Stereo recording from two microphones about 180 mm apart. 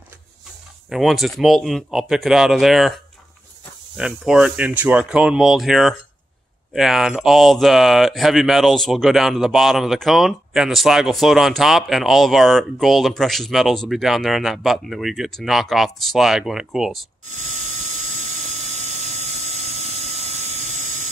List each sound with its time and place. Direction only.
0.8 s speech: centre (ahead or behind)
3.9 s speech: 5° right (ahead or behind)
17.5 s a sound: 40° right (ahead or behind)